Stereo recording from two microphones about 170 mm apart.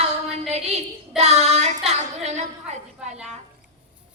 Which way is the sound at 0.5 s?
40° right (ahead or behind).